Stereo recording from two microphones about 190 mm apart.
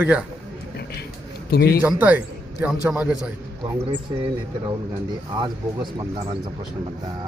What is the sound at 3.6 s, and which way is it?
Speech, 25° right (ahead or behind).